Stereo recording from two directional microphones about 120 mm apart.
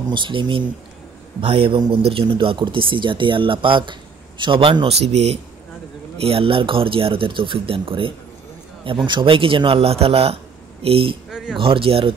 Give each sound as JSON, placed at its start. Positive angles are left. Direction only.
{"t": 0.1, "sound": "speech", "side_deg": -45}
{"t": 11.2, "sound": "a sound", "side_deg": -5}
{"t": 11.5, "sound": "speech", "side_deg": -50}